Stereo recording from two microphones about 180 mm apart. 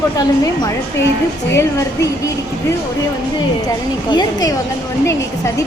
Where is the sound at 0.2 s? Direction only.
20° left (ahead or behind).